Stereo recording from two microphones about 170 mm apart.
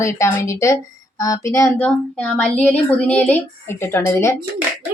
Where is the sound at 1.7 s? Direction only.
5° left (ahead or behind).